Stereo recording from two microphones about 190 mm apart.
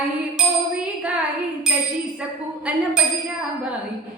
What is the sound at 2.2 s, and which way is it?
Speech, 5° right (ahead or behind).